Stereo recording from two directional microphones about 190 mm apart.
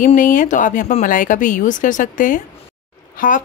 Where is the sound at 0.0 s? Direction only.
45° left (ahead or behind).